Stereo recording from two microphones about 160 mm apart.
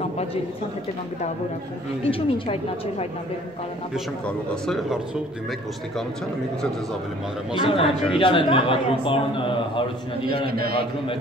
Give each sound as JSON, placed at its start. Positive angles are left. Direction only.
{"t": 2.0, "sound": "speech", "side_deg": 35}
{"t": 4.6, "sound": "speech", "side_deg": 0}
{"t": 7.5, "sound": "speech", "side_deg": 35}
{"t": 10.4, "sound": "a man's voice", "side_deg": -75}